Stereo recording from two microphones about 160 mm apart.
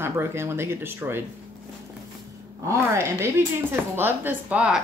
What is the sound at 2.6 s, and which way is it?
Speech, 15° right (ahead or behind).